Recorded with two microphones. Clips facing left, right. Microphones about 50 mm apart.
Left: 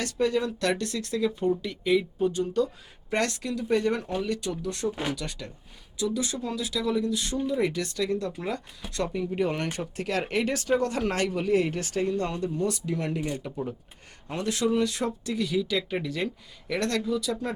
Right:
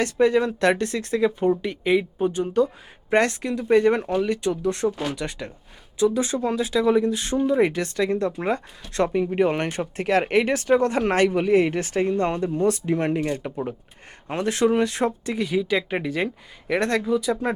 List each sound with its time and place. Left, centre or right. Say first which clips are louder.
0.0 s speech: right 7 dB; right